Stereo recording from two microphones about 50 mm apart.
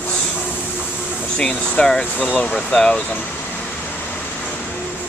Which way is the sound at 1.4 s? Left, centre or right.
Centre.